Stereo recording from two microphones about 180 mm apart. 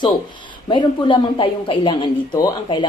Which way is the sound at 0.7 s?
25° left (ahead or behind).